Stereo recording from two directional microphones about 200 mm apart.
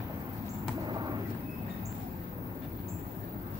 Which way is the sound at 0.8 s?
20° right (ahead or behind).